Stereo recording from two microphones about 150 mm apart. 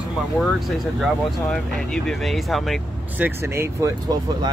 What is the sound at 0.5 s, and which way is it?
Speech, centre (ahead or behind).